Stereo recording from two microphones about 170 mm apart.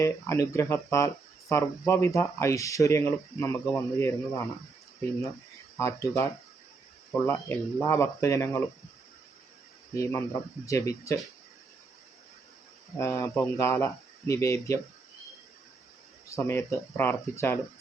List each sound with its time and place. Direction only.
0.0 s speech: 15° left (ahead or behind)
5.7 s speech: 15° left (ahead or behind)
9.9 s speech: 15° left (ahead or behind)
13.0 s speech: 15° left (ahead or behind)
16.3 s speech: 15° left (ahead or behind)